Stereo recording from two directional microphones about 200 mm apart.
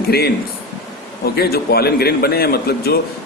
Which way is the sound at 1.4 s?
50° left (ahead or behind).